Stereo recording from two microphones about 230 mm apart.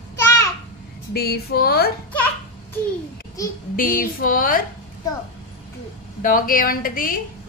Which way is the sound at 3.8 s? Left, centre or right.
Left.